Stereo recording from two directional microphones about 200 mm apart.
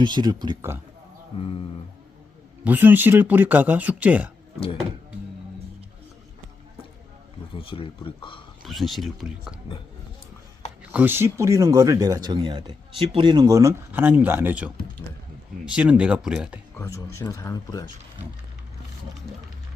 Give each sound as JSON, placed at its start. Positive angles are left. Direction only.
{"t": 0.0, "sound": "speech", "side_deg": -20}
{"t": 1.4, "sound": "speech", "side_deg": 25}
{"t": 2.6, "sound": "speech", "side_deg": -10}
{"t": 7.5, "sound": "speech", "side_deg": 25}
{"t": 8.6, "sound": "speech", "side_deg": 0}
{"t": 10.9, "sound": "speech", "side_deg": -10}
{"t": 16.7, "sound": "speech", "side_deg": 15}